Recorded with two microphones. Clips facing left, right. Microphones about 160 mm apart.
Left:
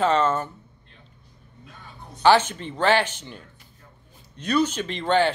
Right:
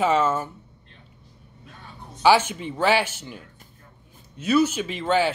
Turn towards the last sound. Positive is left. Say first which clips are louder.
# left 1 dB
turn(degrees=-5)  # may be behind; listen again after turning